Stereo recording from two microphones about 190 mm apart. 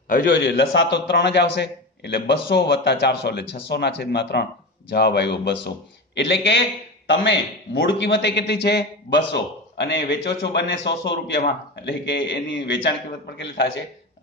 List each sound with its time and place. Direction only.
0.4 s a man's voice: 70° left (ahead or behind)